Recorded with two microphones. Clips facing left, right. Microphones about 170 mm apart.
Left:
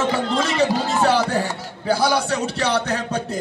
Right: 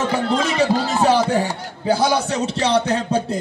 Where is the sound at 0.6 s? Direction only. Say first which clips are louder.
Even; 15° right (ahead or behind).